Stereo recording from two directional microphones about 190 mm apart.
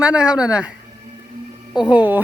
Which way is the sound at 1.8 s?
10° right (ahead or behind).